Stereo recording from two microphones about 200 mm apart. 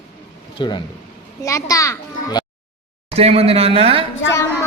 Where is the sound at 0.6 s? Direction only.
25° left (ahead or behind).